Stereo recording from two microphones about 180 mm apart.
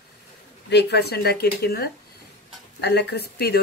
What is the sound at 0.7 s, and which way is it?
Speech, 70° left (ahead or behind).